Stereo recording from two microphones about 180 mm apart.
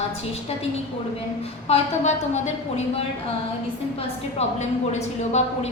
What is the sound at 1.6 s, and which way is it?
A woman's voice, 35° left (ahead or behind).